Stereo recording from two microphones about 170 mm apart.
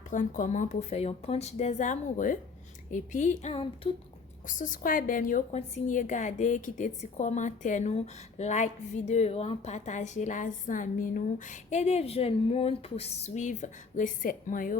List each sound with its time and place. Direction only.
0.1 s a woman's voice: 50° left (ahead or behind)
4.4 s a woman's voice: 50° left (ahead or behind)
5.5 s a woman's voice: 40° left (ahead or behind); by 14.8 s 55° left (ahead or behind)